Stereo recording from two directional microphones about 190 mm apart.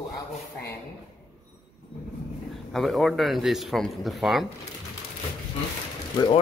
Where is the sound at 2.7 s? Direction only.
Centre (ahead or behind).